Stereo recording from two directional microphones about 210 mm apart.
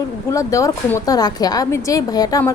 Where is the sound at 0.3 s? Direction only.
15° left (ahead or behind).